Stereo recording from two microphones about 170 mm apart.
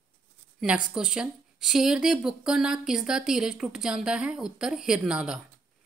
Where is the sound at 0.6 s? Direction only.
5° right (ahead or behind).